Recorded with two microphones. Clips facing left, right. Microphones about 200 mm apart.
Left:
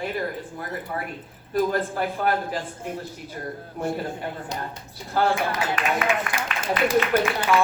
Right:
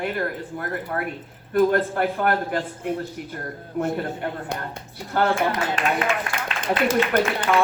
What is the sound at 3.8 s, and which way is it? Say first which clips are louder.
Speech: right 3 dB; 60° right (ahead or behind).